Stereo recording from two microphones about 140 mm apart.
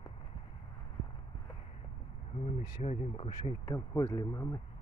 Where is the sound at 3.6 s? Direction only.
20° left (ahead or behind).